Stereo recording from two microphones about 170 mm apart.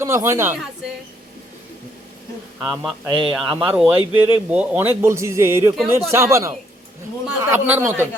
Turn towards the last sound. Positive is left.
turn(degrees=-10)  # may be behind; listen again after turning